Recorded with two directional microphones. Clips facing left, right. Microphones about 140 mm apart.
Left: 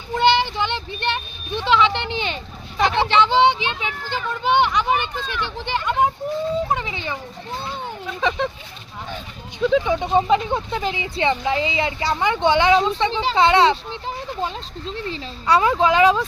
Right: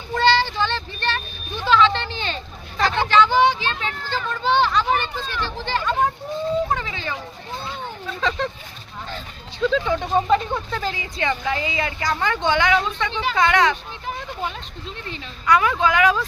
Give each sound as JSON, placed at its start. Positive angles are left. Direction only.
{"t": 0.2, "sound": "vehicle", "side_deg": 20}
{"t": 6.7, "sound": "dog", "side_deg": 20}
{"t": 8.0, "sound": "a sound", "side_deg": 10}
{"t": 9.1, "sound": "speech", "side_deg": 15}